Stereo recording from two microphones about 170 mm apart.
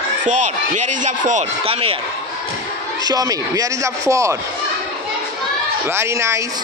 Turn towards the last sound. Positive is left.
turn(degrees=-15)  # may be behind; listen again after turning